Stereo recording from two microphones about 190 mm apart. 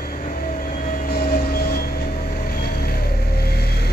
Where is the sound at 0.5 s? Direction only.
45° left (ahead or behind).